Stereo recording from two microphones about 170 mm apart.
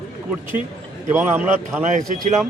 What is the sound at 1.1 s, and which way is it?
Speech, 10° right (ahead or behind).